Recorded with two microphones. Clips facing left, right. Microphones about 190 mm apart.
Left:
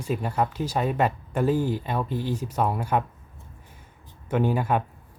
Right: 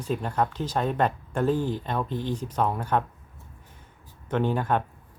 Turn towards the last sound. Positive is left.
turn(degrees=10)  # may be behind; listen again after turning